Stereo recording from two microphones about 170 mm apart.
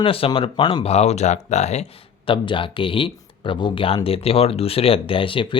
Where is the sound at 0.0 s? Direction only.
35° left (ahead or behind).